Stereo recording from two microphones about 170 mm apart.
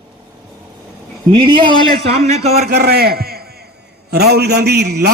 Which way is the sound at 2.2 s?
40° right (ahead or behind).